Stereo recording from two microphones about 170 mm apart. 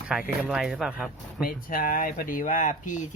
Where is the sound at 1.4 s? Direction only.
55° left (ahead or behind).